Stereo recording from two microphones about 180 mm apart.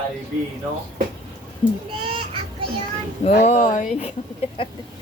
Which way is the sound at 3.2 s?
35° left (ahead or behind).